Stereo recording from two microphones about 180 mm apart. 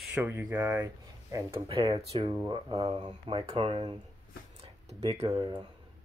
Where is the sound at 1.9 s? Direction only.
30° right (ahead or behind).